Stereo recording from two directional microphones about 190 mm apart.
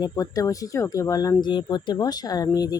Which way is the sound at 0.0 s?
20° left (ahead or behind).